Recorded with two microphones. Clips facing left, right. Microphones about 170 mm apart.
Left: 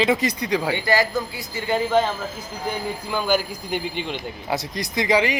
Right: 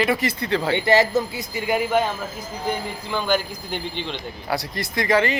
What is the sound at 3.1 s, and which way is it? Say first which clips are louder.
Speech: even; 5° left (ahead or behind).